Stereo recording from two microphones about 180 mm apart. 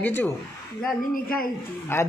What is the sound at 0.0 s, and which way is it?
Speech, 10° left (ahead or behind).